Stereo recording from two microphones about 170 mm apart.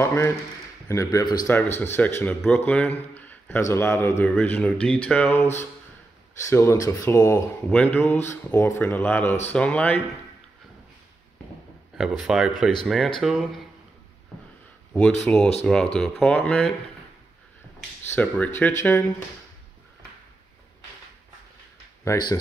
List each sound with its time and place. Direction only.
0.0 s a man's voice: 15° left (ahead or behind)
12.0 s speech: 5° right (ahead or behind)
15.2 s speech: 5° left (ahead or behind)
18.1 s speech: 10° left (ahead or behind)
22.0 s a man's voice: 20° left (ahead or behind)